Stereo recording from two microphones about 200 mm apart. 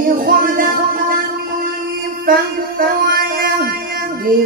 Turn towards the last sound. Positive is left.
turn(degrees=-45)  # may be behind; listen again after turning